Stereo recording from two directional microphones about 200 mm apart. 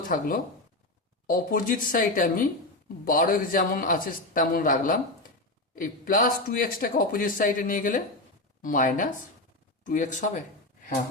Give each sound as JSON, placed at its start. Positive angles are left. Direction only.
{"t": 0.1, "sound": "speech", "side_deg": 45}